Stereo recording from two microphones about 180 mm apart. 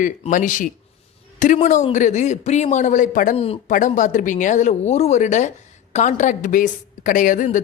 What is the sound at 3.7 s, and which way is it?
A woman's voice, 45° left (ahead or behind).